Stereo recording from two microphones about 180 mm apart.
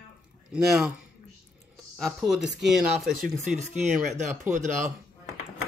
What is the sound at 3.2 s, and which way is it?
Speech, 40° right (ahead or behind).